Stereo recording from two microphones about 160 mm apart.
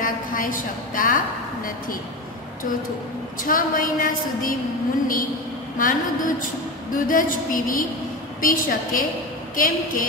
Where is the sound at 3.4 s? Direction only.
60° left (ahead or behind).